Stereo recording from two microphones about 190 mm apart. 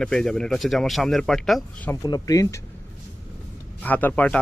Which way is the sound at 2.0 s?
20° left (ahead or behind).